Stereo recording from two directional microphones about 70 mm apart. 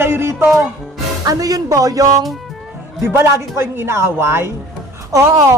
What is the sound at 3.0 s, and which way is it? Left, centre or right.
A woman's voice, right.